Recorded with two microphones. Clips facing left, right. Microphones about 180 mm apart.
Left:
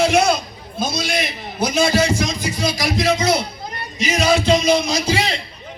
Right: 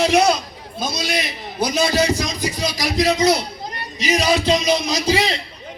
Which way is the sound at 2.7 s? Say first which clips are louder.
Even; 25° left (ahead or behind).